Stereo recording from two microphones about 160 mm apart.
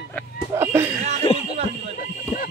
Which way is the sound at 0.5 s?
15° right (ahead or behind).